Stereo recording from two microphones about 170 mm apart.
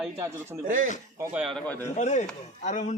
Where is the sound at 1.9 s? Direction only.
45° left (ahead or behind).